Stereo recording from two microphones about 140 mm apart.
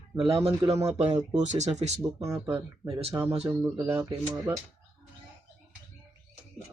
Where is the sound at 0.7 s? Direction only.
25° right (ahead or behind).